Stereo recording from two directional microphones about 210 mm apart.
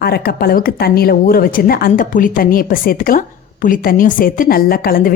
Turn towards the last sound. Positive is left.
turn(degrees=45)  # may be behind; listen again after turning